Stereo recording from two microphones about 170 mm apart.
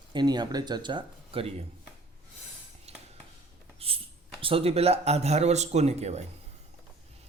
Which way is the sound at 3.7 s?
35° right (ahead or behind).